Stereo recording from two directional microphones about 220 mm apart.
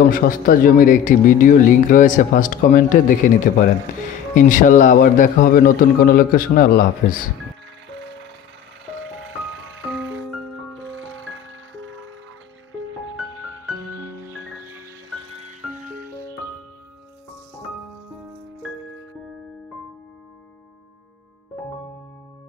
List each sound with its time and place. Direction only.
0.1 s speech: 40° left (ahead or behind)
11.0 s music: 60° right (ahead or behind)